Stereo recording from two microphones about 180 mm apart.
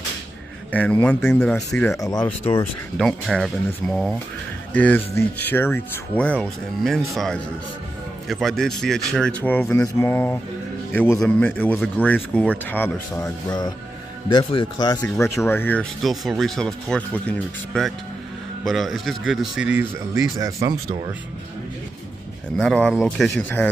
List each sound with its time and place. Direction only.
0.7 s speech: 10° left (ahead or behind)
3.0 s speech: centre (ahead or behind); by 20.7 s 20° right (ahead or behind)
22.6 s speech: 5° left (ahead or behind)